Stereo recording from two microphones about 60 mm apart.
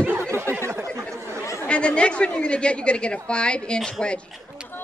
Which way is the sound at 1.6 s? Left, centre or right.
Centre.